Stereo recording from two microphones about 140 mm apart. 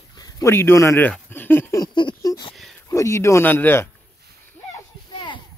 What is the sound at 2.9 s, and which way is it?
Speech, 20° left (ahead or behind).